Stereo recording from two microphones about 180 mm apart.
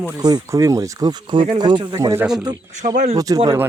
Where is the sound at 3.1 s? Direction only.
20° right (ahead or behind).